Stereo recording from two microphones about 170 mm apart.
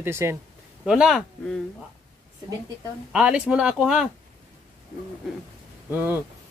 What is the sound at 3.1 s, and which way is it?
Speech, 5° right (ahead or behind).